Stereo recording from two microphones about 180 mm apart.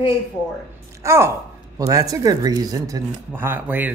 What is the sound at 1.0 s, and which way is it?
A woman's voice, 15° right (ahead or behind).